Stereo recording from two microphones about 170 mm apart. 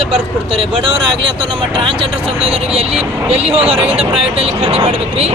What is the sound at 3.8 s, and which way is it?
Speech, 35° right (ahead or behind).